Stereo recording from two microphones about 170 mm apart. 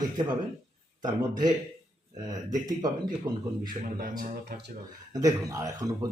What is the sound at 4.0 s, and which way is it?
Speech, 60° right (ahead or behind).